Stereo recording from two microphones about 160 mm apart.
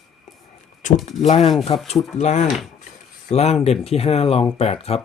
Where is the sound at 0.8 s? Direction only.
50° left (ahead or behind).